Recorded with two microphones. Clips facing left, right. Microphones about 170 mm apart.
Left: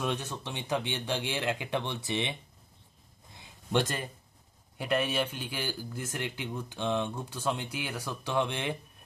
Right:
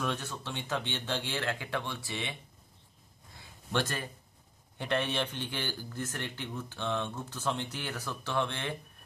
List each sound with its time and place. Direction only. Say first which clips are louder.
0.0 s a man's voice: left 2 dB; 15° left (ahead or behind)
3.3 s a sound: left 4 dB; 20° left (ahead or behind)
4.7 s a man's voice: left 2 dB; 5° left (ahead or behind)